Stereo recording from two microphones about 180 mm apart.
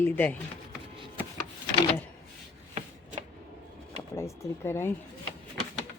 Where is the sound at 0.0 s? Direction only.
10° left (ahead or behind).